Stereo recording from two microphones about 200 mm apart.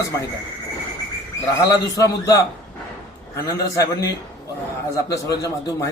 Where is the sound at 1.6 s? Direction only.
15° left (ahead or behind).